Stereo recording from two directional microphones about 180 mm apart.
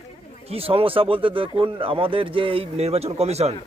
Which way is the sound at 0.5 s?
30° right (ahead or behind).